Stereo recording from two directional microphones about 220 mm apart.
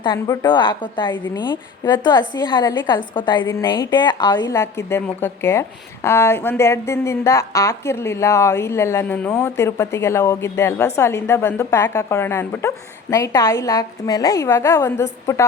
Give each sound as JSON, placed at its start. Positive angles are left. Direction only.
{"t": 0.0, "sound": "a woman's voice", "side_deg": 20}